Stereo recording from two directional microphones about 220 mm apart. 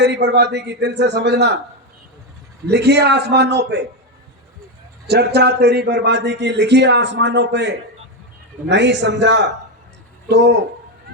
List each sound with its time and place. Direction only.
0.0 s a man's voice: 50° right (ahead or behind)
2.6 s a man's voice: 50° right (ahead or behind)
5.0 s a man's voice: 45° right (ahead or behind)
8.7 s a man's voice: 50° right (ahead or behind)